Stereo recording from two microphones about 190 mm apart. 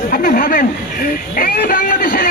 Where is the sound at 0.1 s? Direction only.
45° left (ahead or behind).